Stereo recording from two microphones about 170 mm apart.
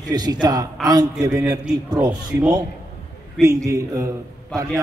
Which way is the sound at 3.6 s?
20° right (ahead or behind).